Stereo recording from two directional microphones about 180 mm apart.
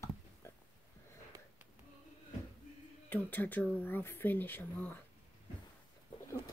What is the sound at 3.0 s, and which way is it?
Speech, 10° left (ahead or behind).